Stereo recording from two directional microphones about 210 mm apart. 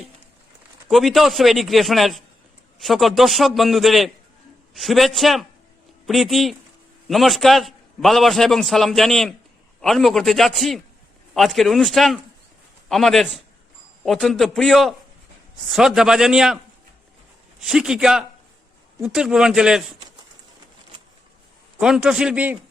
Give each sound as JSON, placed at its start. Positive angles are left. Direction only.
{"t": 0.9, "sound": "a man's voice", "side_deg": 0}
{"t": 17.6, "sound": "a man's voice", "side_deg": 0}
{"t": 21.8, "sound": "a man's voice", "side_deg": -5}